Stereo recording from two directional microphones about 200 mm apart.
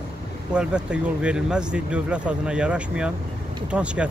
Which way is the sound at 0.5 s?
5° right (ahead or behind).